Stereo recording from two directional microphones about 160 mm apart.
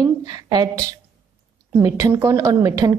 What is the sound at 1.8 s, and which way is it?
A woman's voice, 20° right (ahead or behind).